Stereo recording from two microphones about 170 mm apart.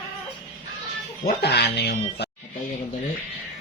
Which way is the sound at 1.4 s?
75° left (ahead or behind).